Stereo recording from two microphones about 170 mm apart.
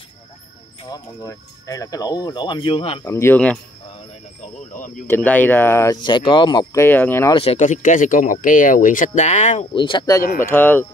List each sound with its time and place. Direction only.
0.8 s speech: 20° left (ahead or behind)
3.1 s speech: 15° left (ahead or behind)
4.7 s speech: 50° left (ahead or behind)
5.0 s speech: 10° left (ahead or behind)
7.5 s speech: 45° left (ahead or behind)
9.8 s speech: 30° left (ahead or behind)
10.4 s speech: 10° left (ahead or behind)